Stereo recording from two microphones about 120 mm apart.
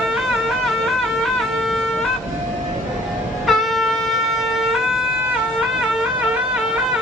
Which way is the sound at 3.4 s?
Centre (ahead or behind).